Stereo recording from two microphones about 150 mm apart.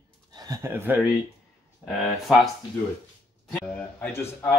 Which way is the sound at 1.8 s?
Centre (ahead or behind).